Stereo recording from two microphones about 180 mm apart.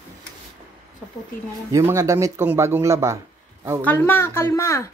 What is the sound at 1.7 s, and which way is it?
Speech, 15° right (ahead or behind).